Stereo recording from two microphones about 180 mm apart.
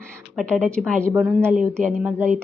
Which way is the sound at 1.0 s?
10° right (ahead or behind).